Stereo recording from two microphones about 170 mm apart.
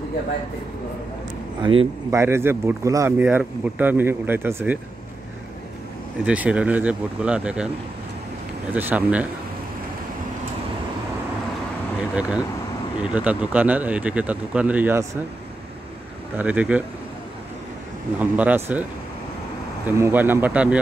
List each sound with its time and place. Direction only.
1.6 s a man's voice: 30° right (ahead or behind)
2.0 s speech: 15° right (ahead or behind)
6.2 s speech: 5° right (ahead or behind)
8.7 s speech: 10° right (ahead or behind)
12.2 s speech: 5° right (ahead or behind)
16.3 s speech: 10° right (ahead or behind)
18.2 s speech: 10° right (ahead or behind)
20.0 s speech: 10° right (ahead or behind)